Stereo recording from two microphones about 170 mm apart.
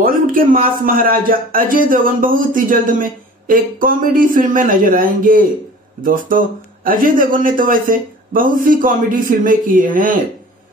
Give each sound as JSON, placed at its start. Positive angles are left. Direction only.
{"t": 0.0, "sound": "a man's voice", "side_deg": -55}